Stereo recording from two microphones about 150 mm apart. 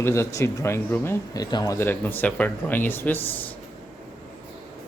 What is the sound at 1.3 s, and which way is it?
Speech, 25° left (ahead or behind).